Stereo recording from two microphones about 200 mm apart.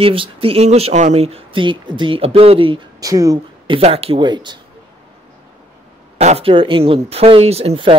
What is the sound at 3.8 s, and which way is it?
Speech, 30° right (ahead or behind).